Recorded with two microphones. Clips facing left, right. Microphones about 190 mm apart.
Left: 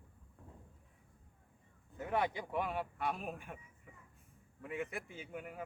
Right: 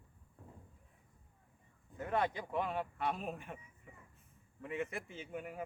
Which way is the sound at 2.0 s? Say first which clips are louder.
Even; 10° left (ahead or behind).